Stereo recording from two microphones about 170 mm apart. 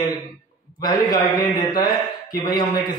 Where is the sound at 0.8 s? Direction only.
25° left (ahead or behind).